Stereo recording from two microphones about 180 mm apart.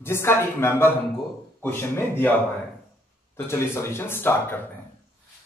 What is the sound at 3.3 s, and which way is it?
Speech, 15° left (ahead or behind).